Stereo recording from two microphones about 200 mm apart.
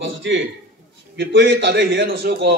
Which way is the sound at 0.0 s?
65° right (ahead or behind).